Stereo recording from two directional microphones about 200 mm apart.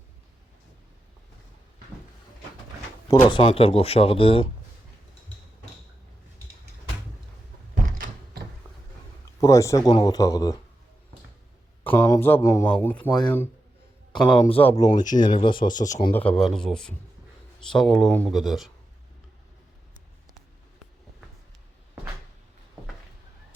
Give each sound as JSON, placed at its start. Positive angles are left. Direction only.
{"t": 3.2, "sound": "speech", "side_deg": 25}
{"t": 7.9, "sound": "a sound", "side_deg": -45}
{"t": 9.4, "sound": "speech", "side_deg": 15}
{"t": 11.8, "sound": "speech", "side_deg": 10}
{"t": 14.1, "sound": "speech", "side_deg": 20}
{"t": 16.1, "sound": "speech", "side_deg": 5}